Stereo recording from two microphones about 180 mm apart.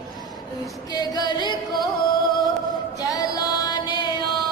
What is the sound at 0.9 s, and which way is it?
Music, 20° left (ahead or behind).